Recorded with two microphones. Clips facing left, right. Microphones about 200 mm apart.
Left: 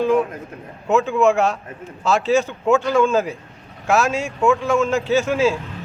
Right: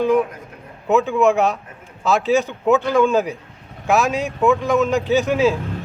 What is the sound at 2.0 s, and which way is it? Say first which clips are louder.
Speech: even; 15° right (ahead or behind).